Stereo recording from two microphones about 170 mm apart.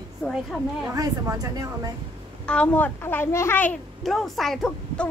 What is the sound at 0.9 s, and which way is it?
Speech, 20° right (ahead or behind).